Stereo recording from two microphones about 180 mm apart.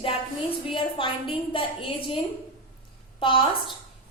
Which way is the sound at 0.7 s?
30° left (ahead or behind).